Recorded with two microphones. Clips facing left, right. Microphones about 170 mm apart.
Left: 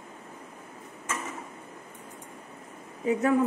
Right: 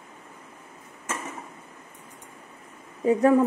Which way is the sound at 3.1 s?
35° right (ahead or behind).